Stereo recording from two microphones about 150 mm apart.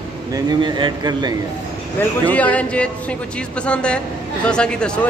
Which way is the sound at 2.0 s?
10° left (ahead or behind).